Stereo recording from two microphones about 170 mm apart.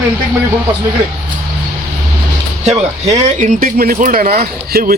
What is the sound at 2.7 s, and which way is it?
Speech, 45° right (ahead or behind).